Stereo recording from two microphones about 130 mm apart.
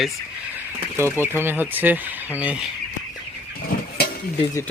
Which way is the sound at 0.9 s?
20° right (ahead or behind).